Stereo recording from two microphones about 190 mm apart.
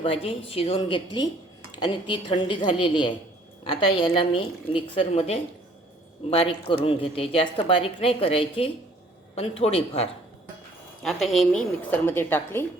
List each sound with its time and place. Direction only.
0.0 s a woman's voice: 30° left (ahead or behind)
11.0 s a woman's voice: centre (ahead or behind)